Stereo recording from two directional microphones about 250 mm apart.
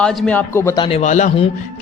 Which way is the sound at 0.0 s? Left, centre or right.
Centre.